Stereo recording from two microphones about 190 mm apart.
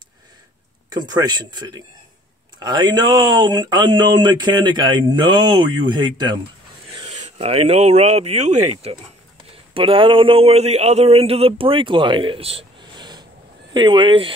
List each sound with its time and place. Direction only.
0.9 s speech: 20° right (ahead or behind)
7.1 s speech: 35° right (ahead or behind)